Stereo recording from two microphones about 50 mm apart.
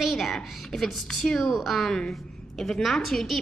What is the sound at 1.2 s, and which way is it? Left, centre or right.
Speech, centre.